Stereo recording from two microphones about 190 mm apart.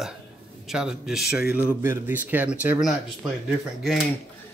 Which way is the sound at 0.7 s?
5° right (ahead or behind).